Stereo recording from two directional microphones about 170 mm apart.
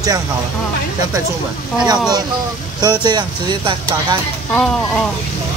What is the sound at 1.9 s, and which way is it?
Speech, 20° right (ahead or behind).